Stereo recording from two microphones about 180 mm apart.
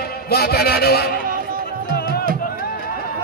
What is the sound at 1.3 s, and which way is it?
Music, 50° right (ahead or behind).